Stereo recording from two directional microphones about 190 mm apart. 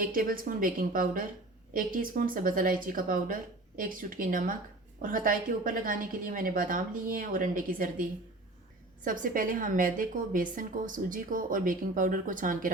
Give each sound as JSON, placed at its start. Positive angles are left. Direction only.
{"t": 0.0, "sound": "a woman's voice", "side_deg": -50}
{"t": 9.0, "sound": "a woman's voice", "side_deg": -45}